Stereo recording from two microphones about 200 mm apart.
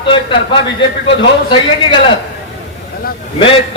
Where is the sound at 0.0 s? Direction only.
25° left (ahead or behind).